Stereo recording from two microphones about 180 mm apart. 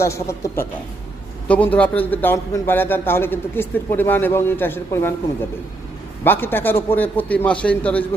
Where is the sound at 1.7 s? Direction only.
10° left (ahead or behind).